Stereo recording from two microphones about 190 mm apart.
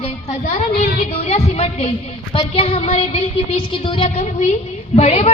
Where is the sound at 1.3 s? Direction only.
35° left (ahead or behind).